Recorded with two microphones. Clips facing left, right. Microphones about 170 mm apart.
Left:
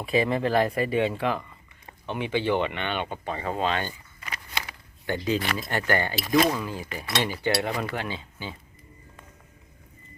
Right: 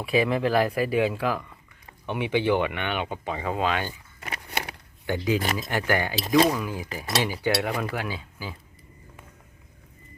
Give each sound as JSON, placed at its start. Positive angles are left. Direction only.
{"t": 0.0, "sound": "speech", "side_deg": -5}
{"t": 2.0, "sound": "speech", "side_deg": -15}
{"t": 4.2, "sound": "biting", "side_deg": -60}
{"t": 5.0, "sound": "speech", "side_deg": -15}
{"t": 6.1, "sound": "speech", "side_deg": -30}
{"t": 6.6, "sound": "speech", "side_deg": -10}